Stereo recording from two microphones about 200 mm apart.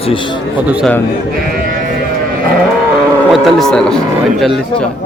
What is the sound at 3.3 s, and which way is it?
Speech, centre (ahead or behind).